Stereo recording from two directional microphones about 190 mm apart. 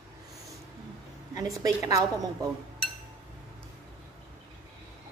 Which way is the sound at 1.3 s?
20° right (ahead or behind).